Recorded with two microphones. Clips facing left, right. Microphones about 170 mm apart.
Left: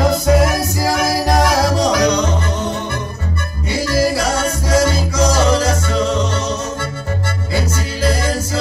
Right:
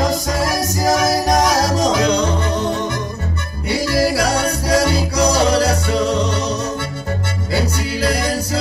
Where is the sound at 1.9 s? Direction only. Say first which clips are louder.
Left 1 dB; 25° right (ahead or behind).